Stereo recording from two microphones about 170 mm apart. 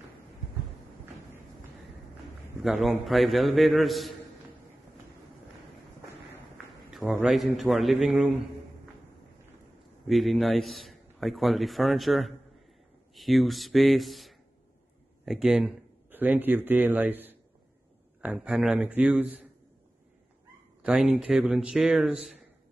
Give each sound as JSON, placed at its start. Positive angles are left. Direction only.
{"t": 2.6, "sound": "a man's voice", "side_deg": 0}
{"t": 6.9, "sound": "a man's voice", "side_deg": 0}
{"t": 10.0, "sound": "a man's voice", "side_deg": 0}
{"t": 20.8, "sound": "a man's voice", "side_deg": -5}